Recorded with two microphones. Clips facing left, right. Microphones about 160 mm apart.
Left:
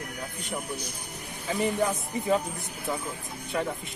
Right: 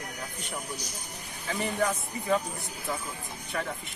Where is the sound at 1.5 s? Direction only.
15° left (ahead or behind).